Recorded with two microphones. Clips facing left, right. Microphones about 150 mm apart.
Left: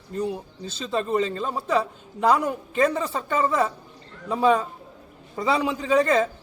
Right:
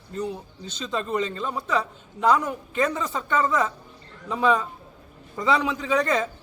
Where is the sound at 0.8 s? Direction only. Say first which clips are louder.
Left 3 dB; 30° left (ahead or behind).